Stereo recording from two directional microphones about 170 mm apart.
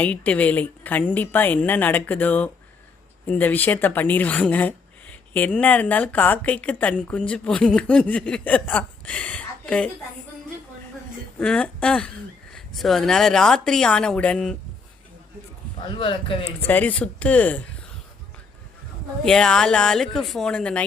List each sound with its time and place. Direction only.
0.0 s speech: 10° left (ahead or behind)
11.3 s speech: 5° left (ahead or behind)
16.0 s speech: 30° left (ahead or behind)
16.6 s speech: 10° left (ahead or behind)
19.2 s speech: 5° left (ahead or behind)